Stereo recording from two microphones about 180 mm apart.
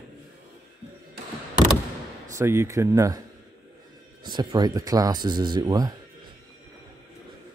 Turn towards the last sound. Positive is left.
turn(degrees=-20)  # may be behind; listen again after turning